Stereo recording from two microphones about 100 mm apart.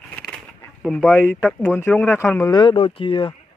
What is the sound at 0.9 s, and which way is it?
Speech, 20° left (ahead or behind).